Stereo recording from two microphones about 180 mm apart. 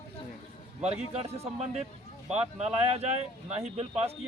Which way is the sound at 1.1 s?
35° right (ahead or behind).